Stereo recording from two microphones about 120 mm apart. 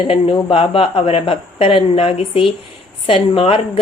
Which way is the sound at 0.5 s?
50° left (ahead or behind).